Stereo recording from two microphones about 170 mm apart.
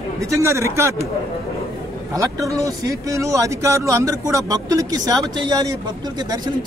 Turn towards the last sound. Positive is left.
turn(degrees=-25)  # may be behind; listen again after turning